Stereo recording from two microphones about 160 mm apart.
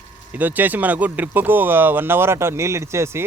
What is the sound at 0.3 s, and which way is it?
Speech, 10° right (ahead or behind).